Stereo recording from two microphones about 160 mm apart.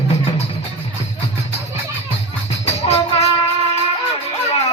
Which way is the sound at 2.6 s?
40° left (ahead or behind).